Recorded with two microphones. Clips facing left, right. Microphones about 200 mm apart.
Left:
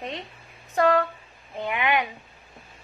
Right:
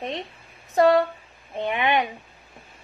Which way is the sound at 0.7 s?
30° right (ahead or behind).